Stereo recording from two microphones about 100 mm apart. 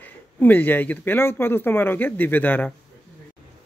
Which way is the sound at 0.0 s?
20° left (ahead or behind).